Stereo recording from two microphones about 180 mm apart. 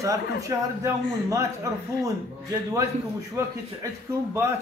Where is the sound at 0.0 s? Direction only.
15° right (ahead or behind).